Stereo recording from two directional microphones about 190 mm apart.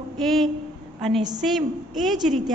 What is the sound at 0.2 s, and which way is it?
A woman's voice, centre (ahead or behind).